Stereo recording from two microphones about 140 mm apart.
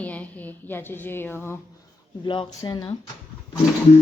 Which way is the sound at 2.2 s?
35° left (ahead or behind).